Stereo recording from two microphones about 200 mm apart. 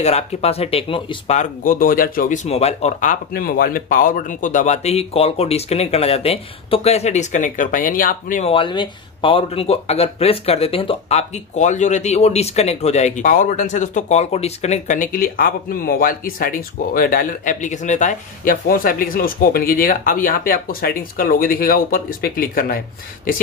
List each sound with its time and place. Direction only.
0.0 s speech: 30° left (ahead or behind)
8.5 s speech: 25° left (ahead or behind); by 22.8 s 45° left (ahead or behind)